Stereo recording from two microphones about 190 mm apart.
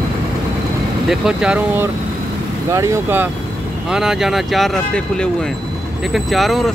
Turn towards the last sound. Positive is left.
turn(degrees=0)  # may be behind; listen again after turning